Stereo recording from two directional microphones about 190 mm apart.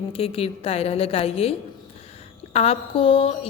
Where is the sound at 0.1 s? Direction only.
30° left (ahead or behind).